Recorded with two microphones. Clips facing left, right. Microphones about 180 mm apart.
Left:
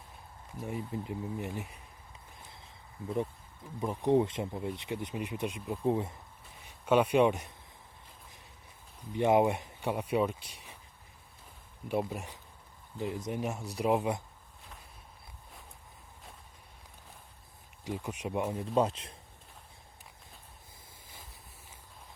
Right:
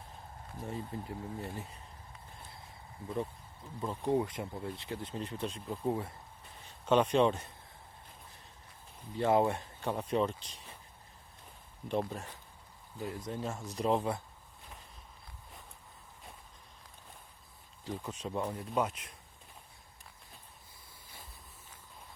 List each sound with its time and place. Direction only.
0.6 s speech: 15° left (ahead or behind)
3.8 s speech: 15° left (ahead or behind)
6.6 s speech: 10° left (ahead or behind)
9.1 s speech: 15° left (ahead or behind)
11.9 s speech: 10° left (ahead or behind)
17.8 s speech: 15° left (ahead or behind)
18.7 s speech: 30° left (ahead or behind)